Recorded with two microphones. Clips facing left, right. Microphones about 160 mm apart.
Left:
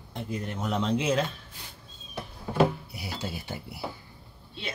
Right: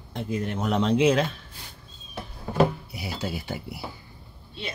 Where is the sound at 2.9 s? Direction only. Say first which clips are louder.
Right 4 dB; 90° right.